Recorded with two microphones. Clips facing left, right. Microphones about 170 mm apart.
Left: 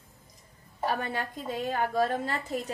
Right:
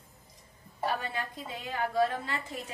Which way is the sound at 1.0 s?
50° left (ahead or behind).